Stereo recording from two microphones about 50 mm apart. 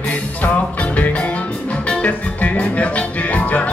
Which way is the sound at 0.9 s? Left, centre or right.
Left.